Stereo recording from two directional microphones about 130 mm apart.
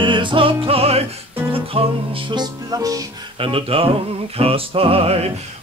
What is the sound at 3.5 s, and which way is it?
Music, 45° right (ahead or behind).